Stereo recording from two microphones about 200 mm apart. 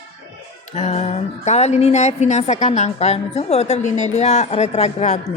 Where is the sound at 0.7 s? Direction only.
35° left (ahead or behind).